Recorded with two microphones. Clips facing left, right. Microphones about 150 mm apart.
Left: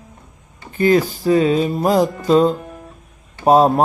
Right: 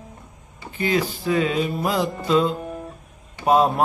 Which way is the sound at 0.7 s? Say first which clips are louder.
Left 8 dB; 45° left (ahead or behind).